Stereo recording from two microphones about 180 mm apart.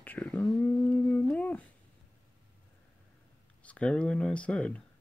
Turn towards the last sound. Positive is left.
turn(degrees=5)  # may be behind; listen again after turning